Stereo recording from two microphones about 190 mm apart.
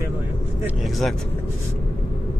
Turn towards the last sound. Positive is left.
turn(degrees=0)  # may be behind; listen again after turning